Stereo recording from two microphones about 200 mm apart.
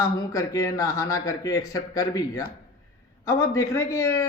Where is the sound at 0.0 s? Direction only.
15° left (ahead or behind).